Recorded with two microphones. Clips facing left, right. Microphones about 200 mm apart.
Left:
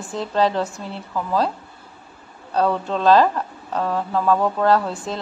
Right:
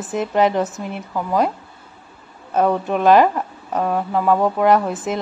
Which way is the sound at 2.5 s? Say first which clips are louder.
Right 3 dB; 20° right (ahead or behind).